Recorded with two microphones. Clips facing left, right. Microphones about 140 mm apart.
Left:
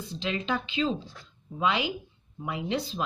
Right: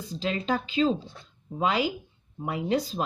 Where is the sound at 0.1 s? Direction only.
40° right (ahead or behind).